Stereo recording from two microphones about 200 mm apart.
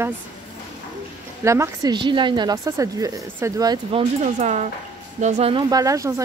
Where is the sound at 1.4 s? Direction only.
15° right (ahead or behind).